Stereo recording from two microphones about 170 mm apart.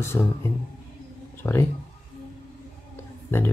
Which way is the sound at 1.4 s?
15° left (ahead or behind).